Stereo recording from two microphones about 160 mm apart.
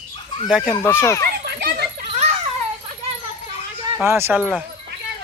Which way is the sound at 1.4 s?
80° right.